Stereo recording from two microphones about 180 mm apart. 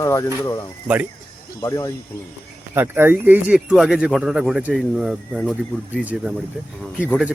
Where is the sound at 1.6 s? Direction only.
20° left (ahead or behind).